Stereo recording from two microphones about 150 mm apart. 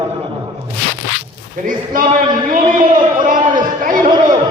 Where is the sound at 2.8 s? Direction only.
60° right (ahead or behind).